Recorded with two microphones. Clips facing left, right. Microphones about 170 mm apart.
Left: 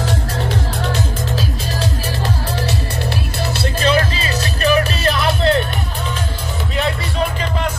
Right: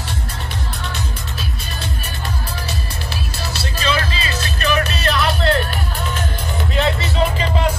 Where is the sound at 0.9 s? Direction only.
90° left.